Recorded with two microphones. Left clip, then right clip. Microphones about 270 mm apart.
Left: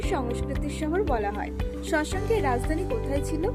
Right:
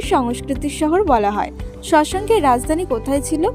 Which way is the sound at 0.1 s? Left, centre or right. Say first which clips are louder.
Right 12 dB; right.